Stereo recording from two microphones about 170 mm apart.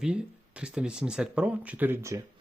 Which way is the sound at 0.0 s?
5° right (ahead or behind).